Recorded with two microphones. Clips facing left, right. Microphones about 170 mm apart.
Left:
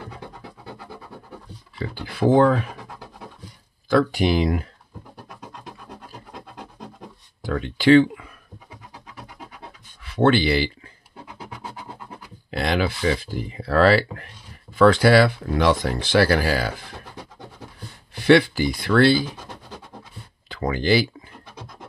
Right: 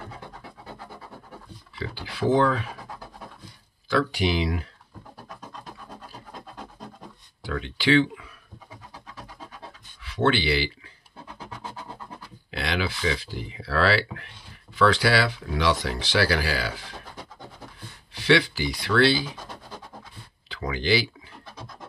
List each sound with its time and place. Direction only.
1.8 s speech: 50° left (ahead or behind)
3.9 s speech: 50° left (ahead or behind)
7.4 s speech: 50° left (ahead or behind)
10.0 s speech: 50° left (ahead or behind)
11.2 s music: 10° left (ahead or behind)
12.4 s speech: 45° left (ahead or behind)
18.1 s speech: 50° left (ahead or behind)
20.4 s speech: 50° left (ahead or behind)